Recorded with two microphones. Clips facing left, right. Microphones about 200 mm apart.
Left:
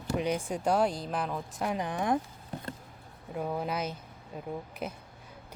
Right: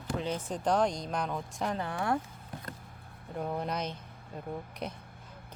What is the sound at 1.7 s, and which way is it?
Speech, 15° left (ahead or behind).